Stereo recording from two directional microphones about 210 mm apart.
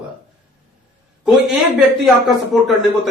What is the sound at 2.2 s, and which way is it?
Speech, centre (ahead or behind).